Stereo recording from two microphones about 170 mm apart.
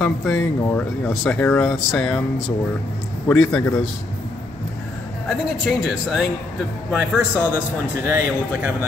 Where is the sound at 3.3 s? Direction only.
Centre (ahead or behind).